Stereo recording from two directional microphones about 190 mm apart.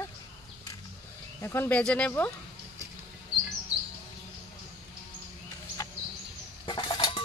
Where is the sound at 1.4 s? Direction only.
10° left (ahead or behind).